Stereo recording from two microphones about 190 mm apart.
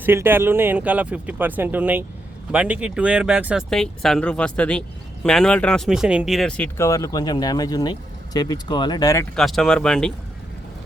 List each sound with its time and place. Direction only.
0.0 s speech: 10° right (ahead or behind)
6.7 s speech: 15° left (ahead or behind)
9.3 s speech: centre (ahead or behind)